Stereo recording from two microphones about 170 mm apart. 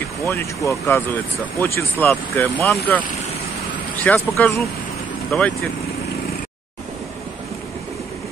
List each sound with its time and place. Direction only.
0.2 s speech: 15° left (ahead or behind)
4.0 s speech: 10° left (ahead or behind)
5.3 s speech: centre (ahead or behind)